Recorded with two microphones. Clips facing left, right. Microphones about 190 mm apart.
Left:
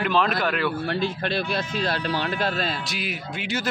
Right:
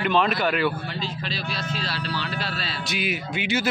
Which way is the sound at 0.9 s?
55° left (ahead or behind).